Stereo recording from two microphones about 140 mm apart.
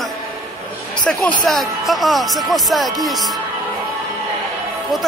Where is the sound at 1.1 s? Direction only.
5° left (ahead or behind).